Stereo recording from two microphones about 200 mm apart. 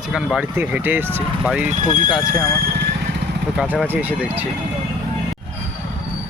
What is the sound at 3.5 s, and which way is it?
Speech, 5° right (ahead or behind).